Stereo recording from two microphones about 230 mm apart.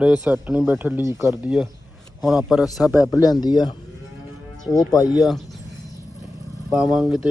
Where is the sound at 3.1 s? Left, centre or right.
Centre.